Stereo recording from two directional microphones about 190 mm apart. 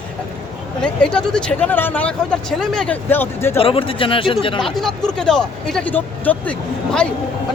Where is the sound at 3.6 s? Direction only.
30° left (ahead or behind).